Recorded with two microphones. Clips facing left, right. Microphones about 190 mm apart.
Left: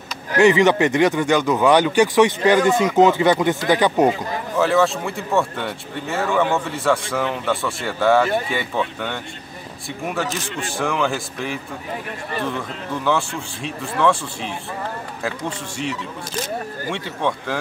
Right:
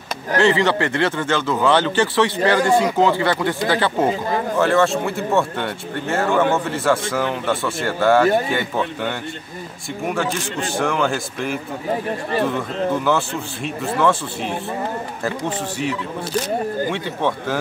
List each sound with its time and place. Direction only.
0.4 s speech: 15° left (ahead or behind)
4.6 s speech: centre (ahead or behind)
16.9 s speech: 5° right (ahead or behind)